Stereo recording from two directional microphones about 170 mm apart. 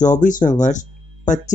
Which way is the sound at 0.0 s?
50° left (ahead or behind).